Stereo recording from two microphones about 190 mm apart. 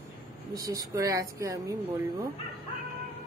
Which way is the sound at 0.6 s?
20° right (ahead or behind).